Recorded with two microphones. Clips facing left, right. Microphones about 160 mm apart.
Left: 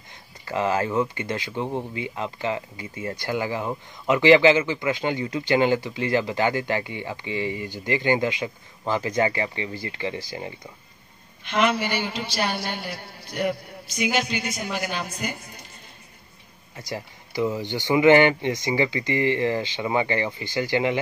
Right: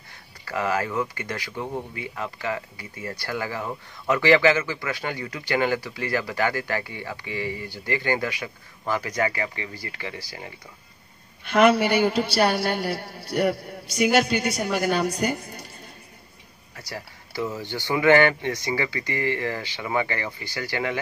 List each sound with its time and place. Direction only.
0.5 s speech: 25° left (ahead or behind)
11.5 s speech: 50° right (ahead or behind)
14.0 s speech: 50° right (ahead or behind)
16.7 s speech: 20° left (ahead or behind)